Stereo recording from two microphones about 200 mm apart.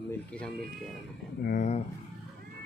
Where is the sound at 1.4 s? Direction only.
40° left (ahead or behind).